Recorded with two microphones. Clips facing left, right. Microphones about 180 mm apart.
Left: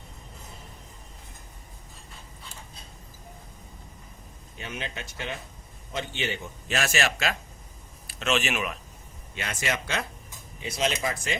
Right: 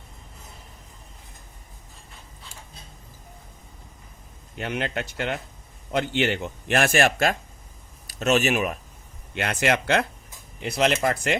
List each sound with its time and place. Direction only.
4.5 s a man's voice: 70° right (ahead or behind); by 7.3 s 50° right (ahead or behind)
8.0 s speech: 40° right (ahead or behind)
9.3 s a man's voice: 65° right (ahead or behind)